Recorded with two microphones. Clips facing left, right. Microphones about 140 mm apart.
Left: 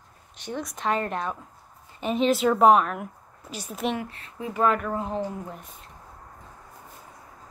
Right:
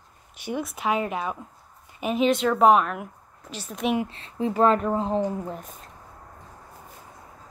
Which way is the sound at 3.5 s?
10° left (ahead or behind).